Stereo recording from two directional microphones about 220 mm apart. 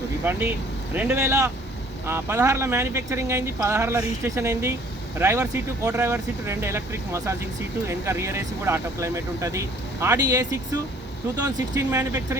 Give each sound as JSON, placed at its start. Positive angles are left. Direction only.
{"t": 0.3, "sound": "speech", "side_deg": -10}